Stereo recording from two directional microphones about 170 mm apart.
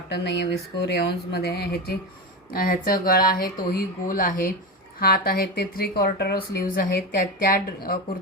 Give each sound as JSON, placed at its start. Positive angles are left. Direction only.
{"t": 0.1, "sound": "speech", "side_deg": 85}
{"t": 2.5, "sound": "speech", "side_deg": 60}